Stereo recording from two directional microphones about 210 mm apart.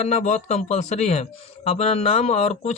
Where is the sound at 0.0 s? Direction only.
35° left (ahead or behind).